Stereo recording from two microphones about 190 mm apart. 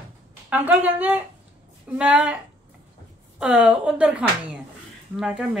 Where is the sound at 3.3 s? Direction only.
5° right (ahead or behind).